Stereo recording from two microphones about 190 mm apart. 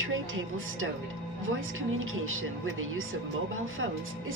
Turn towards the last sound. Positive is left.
turn(degrees=-90)